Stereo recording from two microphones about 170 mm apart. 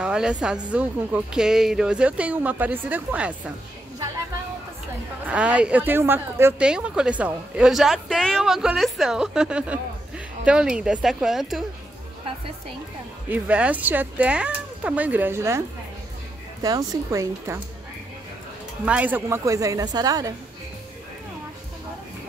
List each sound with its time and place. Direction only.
0.0 s a woman's voice: 5° right (ahead or behind)
5.2 s a woman's voice: 5° right (ahead or behind)
13.3 s a woman's voice: 10° right (ahead or behind)
16.6 s a woman's voice: 20° right (ahead or behind)
18.9 s a woman's voice: 10° right (ahead or behind)